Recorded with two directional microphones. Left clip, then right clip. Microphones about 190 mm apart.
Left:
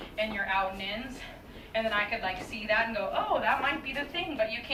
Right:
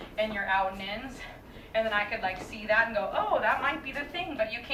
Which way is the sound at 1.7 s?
10° right (ahead or behind).